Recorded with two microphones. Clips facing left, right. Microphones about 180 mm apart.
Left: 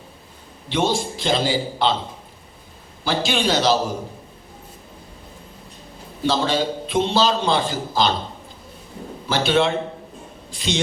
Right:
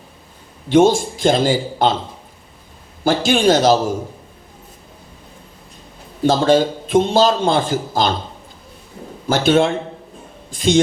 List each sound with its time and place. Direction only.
0.7 s a man's voice: 50° right (ahead or behind)
3.0 s a man's voice: 50° right (ahead or behind)
6.2 s a man's voice: 50° right (ahead or behind)
9.3 s a man's voice: 45° right (ahead or behind)